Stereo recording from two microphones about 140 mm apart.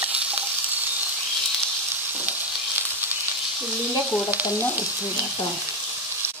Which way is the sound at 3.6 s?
15° right (ahead or behind).